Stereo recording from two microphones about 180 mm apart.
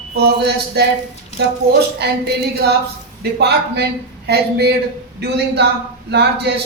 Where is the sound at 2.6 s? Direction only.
65° right (ahead or behind).